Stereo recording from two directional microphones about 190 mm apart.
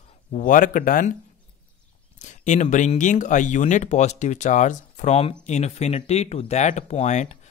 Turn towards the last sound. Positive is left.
turn(degrees=40)  # may be behind; listen again after turning